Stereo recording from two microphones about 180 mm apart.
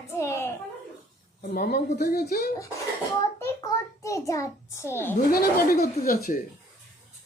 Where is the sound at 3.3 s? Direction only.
15° left (ahead or behind).